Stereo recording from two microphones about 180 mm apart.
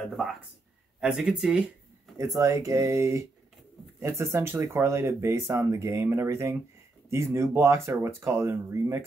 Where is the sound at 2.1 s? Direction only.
20° right (ahead or behind).